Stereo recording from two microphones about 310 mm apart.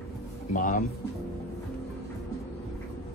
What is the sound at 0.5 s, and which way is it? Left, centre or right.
Speech, left.